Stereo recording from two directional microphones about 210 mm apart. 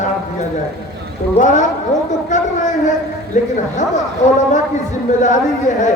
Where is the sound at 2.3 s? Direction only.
35° left (ahead or behind).